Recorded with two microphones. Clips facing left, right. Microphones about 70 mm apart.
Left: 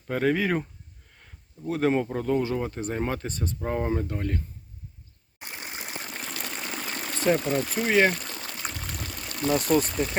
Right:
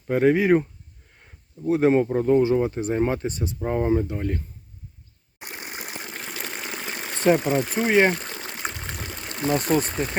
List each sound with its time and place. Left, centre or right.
0.1 s speech: centre
1.2 s a sound: centre
2.1 s speech: right
5.5 s water: centre; by 10.2 s right